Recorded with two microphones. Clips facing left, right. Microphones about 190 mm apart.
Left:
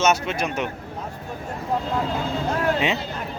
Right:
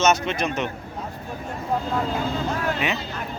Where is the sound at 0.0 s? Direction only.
10° left (ahead or behind).